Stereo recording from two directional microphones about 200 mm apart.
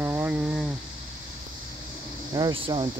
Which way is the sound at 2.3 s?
25° right (ahead or behind).